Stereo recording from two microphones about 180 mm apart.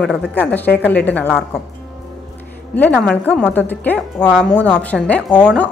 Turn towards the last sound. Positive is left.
turn(degrees=10)  # may be behind; listen again after turning